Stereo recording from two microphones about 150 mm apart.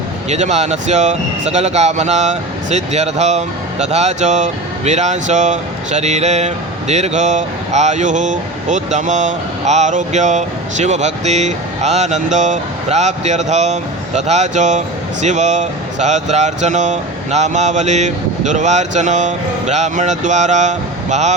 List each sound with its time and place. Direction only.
0.3 s speech: 50° right (ahead or behind)